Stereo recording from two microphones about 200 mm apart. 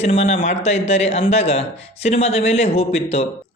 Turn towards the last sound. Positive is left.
turn(degrees=30)  # may be behind; listen again after turning